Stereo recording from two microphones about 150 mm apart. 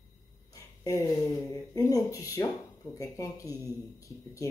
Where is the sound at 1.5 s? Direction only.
25° left (ahead or behind).